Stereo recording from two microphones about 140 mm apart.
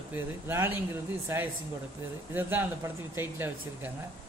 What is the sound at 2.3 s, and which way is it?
Speech, 15° right (ahead or behind).